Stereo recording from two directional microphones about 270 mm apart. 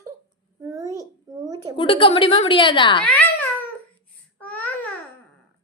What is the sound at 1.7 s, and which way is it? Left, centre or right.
A woman's voice, centre.